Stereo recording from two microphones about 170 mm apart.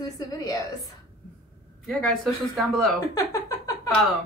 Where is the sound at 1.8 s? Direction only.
Centre (ahead or behind).